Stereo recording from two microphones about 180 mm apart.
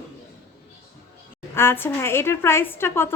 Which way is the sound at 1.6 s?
15° left (ahead or behind).